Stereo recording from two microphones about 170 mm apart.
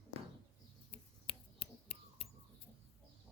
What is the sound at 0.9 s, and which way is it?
Whispering, 35° left (ahead or behind).